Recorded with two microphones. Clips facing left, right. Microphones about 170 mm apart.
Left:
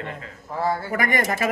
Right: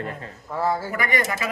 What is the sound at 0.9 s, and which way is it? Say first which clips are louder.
Speech: left 2 dB; 45° left (ahead or behind).